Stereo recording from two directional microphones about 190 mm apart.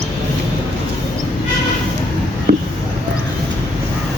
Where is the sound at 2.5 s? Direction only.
55° right (ahead or behind).